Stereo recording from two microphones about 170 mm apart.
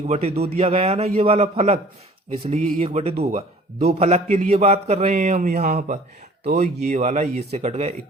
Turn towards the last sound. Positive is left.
turn(degrees=-40)  # may be behind; listen again after turning